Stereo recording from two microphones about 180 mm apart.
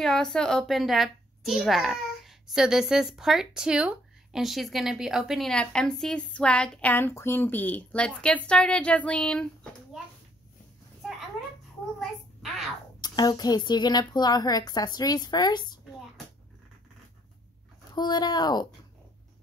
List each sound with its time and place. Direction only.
0.0 s a child's voice: 5° left (ahead or behind)
11.0 s a sound: centre (ahead or behind)
12.0 s a child's voice: centre (ahead or behind)
13.0 s a woman's voice: 20° left (ahead or behind)
17.9 s a woman's voice: 25° left (ahead or behind)